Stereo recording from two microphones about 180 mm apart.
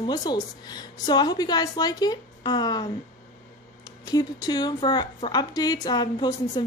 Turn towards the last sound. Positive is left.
turn(degrees=25)  # may be behind; listen again after turning